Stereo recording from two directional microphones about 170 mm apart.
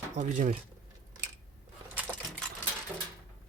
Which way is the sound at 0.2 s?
45° right (ahead or behind).